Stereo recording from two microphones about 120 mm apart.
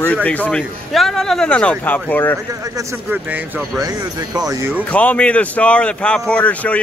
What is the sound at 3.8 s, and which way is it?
Speech, 30° right (ahead or behind).